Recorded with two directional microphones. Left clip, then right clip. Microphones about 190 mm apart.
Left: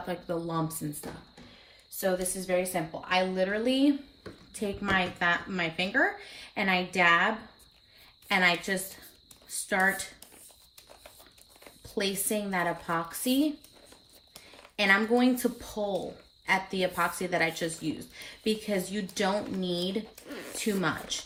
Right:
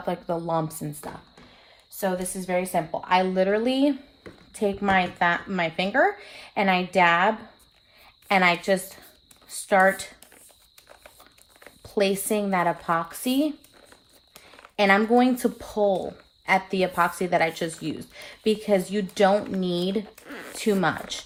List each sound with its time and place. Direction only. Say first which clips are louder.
0.0 s speech: right 5 dB; 50° right (ahead or behind)
2.0 s speech: right 2 dB; 55° right (ahead or behind)
11.8 s speech: right 8 dB; 50° right (ahead or behind)
14.8 s speech: right 5 dB; 50° right (ahead or behind)
20.2 s a sound: right 3 dB; 25° right (ahead or behind)
20.6 s speech: right 7 dB; 50° right (ahead or behind)